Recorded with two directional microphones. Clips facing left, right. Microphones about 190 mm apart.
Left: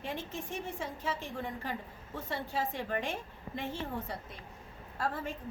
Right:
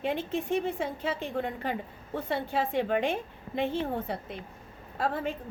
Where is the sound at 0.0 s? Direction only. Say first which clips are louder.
Right 9 dB; 60° right (ahead or behind).